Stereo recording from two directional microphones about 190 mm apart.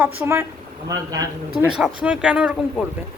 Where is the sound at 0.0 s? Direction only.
15° right (ahead or behind).